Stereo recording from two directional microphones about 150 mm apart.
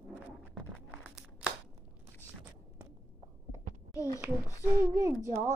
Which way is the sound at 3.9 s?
20° left (ahead or behind).